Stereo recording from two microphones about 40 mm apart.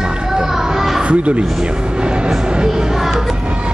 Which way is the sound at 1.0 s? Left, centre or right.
Right.